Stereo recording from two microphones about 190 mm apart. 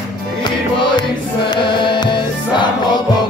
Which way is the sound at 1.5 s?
25° left (ahead or behind).